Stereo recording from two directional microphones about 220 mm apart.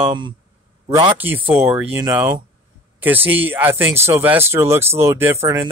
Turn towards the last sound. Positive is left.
turn(degrees=-10)  # may be behind; listen again after turning